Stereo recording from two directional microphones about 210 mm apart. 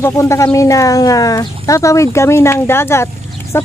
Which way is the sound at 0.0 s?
15° left (ahead or behind).